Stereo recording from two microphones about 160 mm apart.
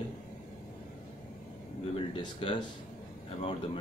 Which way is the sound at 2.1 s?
35° left (ahead or behind).